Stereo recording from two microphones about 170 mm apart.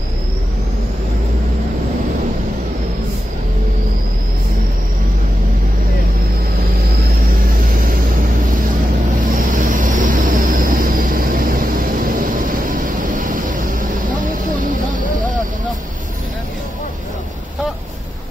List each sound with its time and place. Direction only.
9.3 s vehicle: 55° right (ahead or behind)